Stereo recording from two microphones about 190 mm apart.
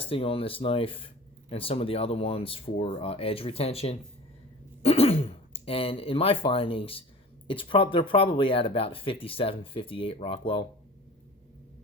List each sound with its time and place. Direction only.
0.0 s speech: 30° left (ahead or behind)